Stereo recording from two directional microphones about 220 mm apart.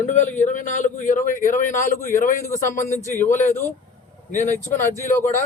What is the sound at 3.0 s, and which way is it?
A man's voice, 35° left (ahead or behind).